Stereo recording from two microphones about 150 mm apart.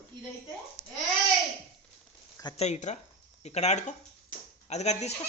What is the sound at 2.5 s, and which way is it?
Speech, 50° left (ahead or behind).